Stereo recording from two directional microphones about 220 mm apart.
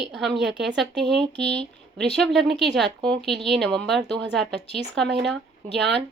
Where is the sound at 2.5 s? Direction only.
50° right (ahead or behind).